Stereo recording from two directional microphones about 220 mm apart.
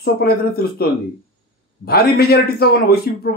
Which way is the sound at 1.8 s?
45° left (ahead or behind).